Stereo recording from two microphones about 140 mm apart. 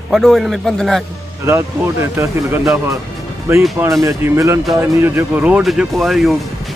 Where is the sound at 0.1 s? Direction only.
Centre (ahead or behind).